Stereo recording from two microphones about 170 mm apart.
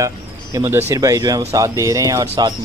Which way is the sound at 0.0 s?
20° right (ahead or behind).